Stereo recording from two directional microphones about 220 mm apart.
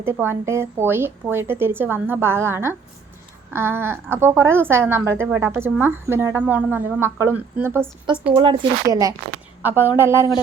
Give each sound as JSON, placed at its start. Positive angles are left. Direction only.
{"t": 0.0, "sound": "a woman's voice", "side_deg": -10}
{"t": 8.2, "sound": "a woman's voice", "side_deg": -25}